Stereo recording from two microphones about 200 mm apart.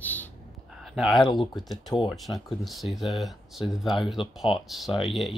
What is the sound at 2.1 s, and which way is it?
Speech, centre (ahead or behind).